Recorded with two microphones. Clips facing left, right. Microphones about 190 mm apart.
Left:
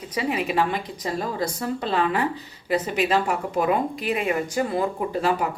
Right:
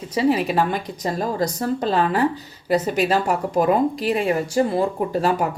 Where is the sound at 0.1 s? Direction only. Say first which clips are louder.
Right 6 dB; 30° right (ahead or behind).